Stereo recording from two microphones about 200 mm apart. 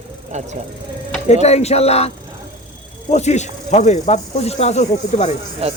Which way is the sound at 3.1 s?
35° left (ahead or behind).